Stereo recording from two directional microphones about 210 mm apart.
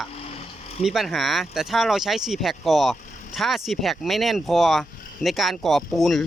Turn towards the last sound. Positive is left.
turn(degrees=0)  # may be behind; listen again after turning